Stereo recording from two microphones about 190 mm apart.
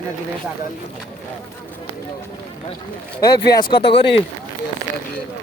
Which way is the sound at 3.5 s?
25° left (ahead or behind).